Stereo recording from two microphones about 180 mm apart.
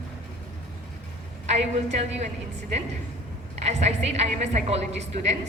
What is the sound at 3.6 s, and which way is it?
Speech, 40° right (ahead or behind).